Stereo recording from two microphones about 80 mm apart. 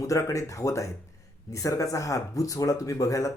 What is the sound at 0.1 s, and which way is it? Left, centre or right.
Speech, left.